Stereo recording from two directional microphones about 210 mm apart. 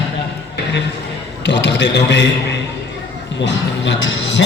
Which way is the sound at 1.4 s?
55° left (ahead or behind).